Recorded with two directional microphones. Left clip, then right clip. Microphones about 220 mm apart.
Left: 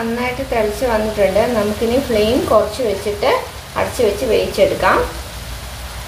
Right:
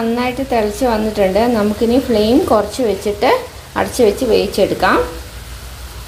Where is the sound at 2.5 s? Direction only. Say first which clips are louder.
Even; 40° right (ahead or behind).